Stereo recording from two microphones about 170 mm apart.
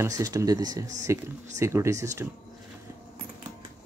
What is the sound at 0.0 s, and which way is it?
Speech, 20° right (ahead or behind).